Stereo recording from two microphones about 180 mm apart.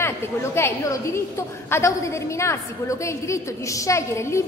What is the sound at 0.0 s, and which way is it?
A woman's voice, 15° left (ahead or behind).